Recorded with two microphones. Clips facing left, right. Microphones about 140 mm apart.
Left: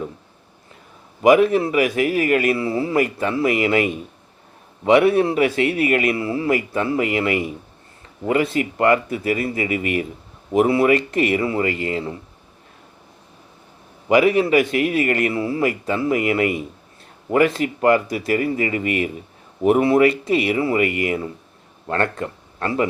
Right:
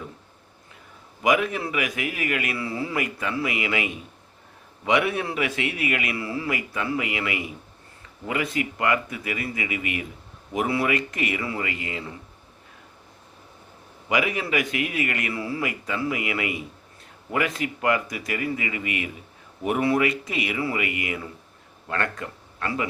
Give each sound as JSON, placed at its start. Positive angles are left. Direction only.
{"t": 1.2, "sound": "a man's voice", "side_deg": 35}
{"t": 14.1, "sound": "a man's voice", "side_deg": 35}
{"t": 20.7, "sound": "a man's voice", "side_deg": 40}